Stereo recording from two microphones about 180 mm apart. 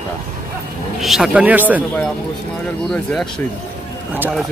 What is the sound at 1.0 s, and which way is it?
Speech, centre (ahead or behind).